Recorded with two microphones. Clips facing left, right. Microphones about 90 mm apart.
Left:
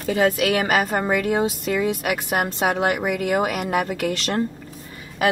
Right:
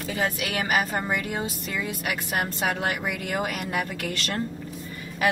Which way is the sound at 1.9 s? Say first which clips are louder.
Left 7 dB; 70° left (ahead or behind).